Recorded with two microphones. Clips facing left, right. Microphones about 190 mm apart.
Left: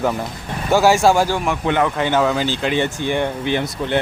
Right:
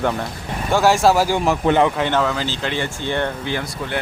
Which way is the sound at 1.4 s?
35° right (ahead or behind).